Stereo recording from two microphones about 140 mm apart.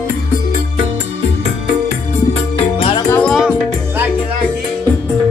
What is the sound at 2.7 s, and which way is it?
Music, 45° left (ahead or behind).